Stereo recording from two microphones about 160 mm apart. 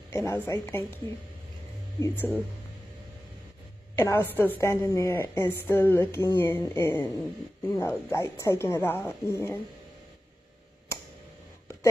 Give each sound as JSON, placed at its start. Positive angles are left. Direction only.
{"t": 0.1, "sound": "a woman's voice", "side_deg": 15}
{"t": 2.0, "sound": "a woman's voice", "side_deg": 15}
{"t": 3.9, "sound": "a woman's voice", "side_deg": 15}